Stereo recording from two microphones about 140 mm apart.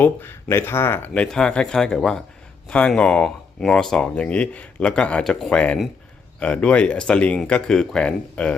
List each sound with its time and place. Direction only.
0.0 s speech: 15° left (ahead or behind)